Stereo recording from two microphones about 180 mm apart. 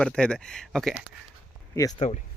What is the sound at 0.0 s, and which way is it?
Speech, 5° left (ahead or behind).